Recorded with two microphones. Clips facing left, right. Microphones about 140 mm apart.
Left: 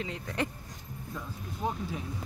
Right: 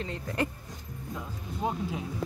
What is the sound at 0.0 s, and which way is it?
Speech, centre (ahead or behind).